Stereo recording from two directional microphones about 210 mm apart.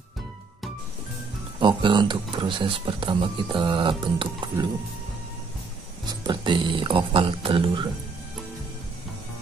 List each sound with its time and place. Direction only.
1.6 s speech: 20° right (ahead or behind)
6.0 s speech: 20° right (ahead or behind)